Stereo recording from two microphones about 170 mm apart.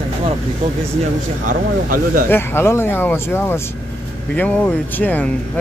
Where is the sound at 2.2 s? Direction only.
15° left (ahead or behind).